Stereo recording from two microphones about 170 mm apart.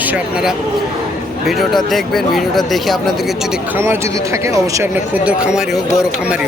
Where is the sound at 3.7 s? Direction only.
15° right (ahead or behind).